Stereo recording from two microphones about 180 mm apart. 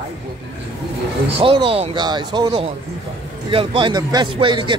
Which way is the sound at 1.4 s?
30° right (ahead or behind).